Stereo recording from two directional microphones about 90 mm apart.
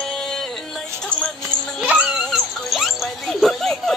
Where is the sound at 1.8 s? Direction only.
15° right (ahead or behind).